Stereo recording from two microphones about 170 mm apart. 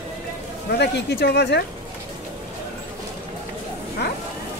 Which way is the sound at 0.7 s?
80° left.